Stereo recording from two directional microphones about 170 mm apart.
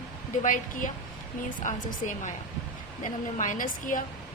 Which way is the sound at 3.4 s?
50° left (ahead or behind).